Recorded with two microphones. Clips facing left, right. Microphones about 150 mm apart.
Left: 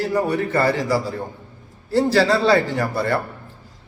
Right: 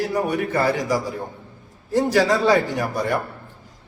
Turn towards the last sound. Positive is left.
turn(degrees=-15)  # may be behind; listen again after turning